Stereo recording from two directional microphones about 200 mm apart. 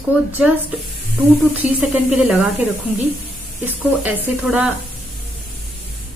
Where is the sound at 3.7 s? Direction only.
10° right (ahead or behind).